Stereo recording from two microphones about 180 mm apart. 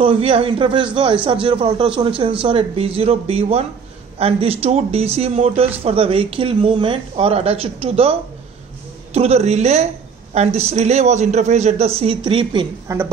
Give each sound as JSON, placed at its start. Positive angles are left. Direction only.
{"t": 0.0, "sound": "a man's voice", "side_deg": -30}
{"t": 12.8, "sound": "a woman's voice", "side_deg": -15}